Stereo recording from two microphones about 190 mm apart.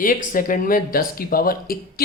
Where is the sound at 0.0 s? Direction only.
45° left (ahead or behind).